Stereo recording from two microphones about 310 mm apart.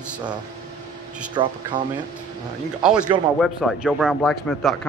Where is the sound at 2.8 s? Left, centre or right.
Centre.